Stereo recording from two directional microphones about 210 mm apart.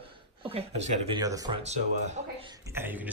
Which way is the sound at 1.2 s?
15° right (ahead or behind).